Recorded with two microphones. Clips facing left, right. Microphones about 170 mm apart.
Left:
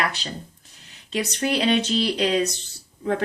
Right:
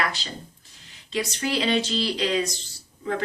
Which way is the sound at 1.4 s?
55° left (ahead or behind).